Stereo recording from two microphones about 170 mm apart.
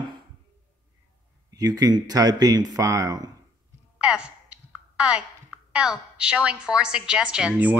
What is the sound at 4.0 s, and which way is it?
A woman's voice, 5° right (ahead or behind).